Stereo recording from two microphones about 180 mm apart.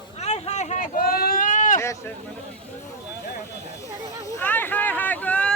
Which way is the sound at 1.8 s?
15° left (ahead or behind).